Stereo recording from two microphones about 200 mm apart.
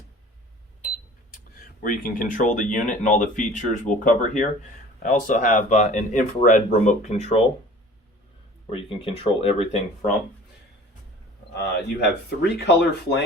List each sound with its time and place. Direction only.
1.8 s speech: 45° left (ahead or behind)
8.7 s speech: 25° left (ahead or behind)
11.5 s speech: 55° left (ahead or behind)